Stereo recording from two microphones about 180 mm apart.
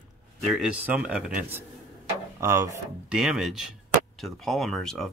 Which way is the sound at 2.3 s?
15° right (ahead or behind).